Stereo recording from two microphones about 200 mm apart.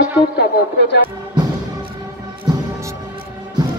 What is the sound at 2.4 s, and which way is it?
Music, 15° right (ahead or behind).